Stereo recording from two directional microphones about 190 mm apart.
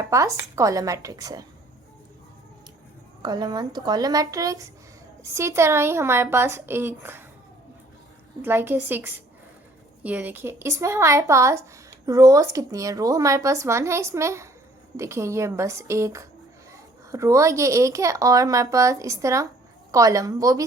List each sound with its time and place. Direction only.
0.0 s speech: 15° right (ahead or behind)
3.2 s speech: 20° right (ahead or behind)
8.4 s speech: 10° right (ahead or behind)